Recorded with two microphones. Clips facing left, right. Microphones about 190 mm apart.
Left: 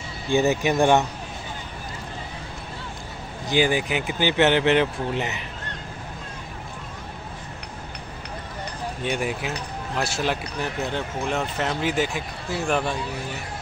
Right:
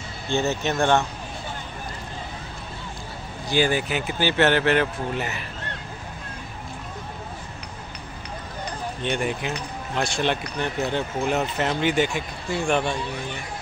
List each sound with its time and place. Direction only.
0.3 s speech: 15° left (ahead or behind)
3.4 s speech: 15° left (ahead or behind)
9.0 s speech: 5° left (ahead or behind)